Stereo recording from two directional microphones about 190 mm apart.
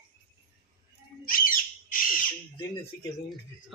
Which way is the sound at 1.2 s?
50° left (ahead or behind).